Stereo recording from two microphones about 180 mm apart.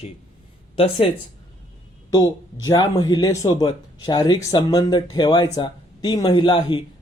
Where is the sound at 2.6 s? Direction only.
20° left (ahead or behind).